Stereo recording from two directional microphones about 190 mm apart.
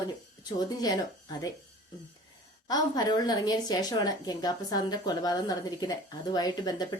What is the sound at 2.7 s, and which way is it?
A woman's voice, 20° left (ahead or behind).